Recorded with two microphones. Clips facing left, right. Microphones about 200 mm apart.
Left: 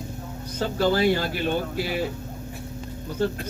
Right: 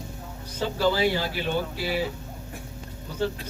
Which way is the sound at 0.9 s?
50° left (ahead or behind).